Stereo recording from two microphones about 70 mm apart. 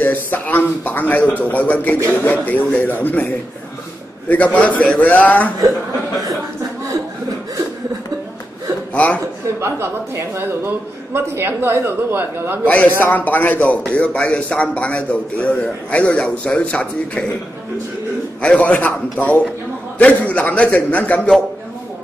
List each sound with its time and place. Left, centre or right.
0.0 s speech: left
4.3 s speech: left
8.9 s speech: centre
9.6 s a man's voice: right
12.6 s speech: left
18.4 s a man's voice: centre